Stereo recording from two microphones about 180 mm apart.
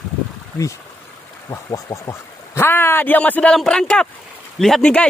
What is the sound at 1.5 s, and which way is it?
Speech, 20° left (ahead or behind).